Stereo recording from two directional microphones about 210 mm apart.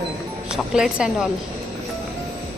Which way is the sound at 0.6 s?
Centre (ahead or behind).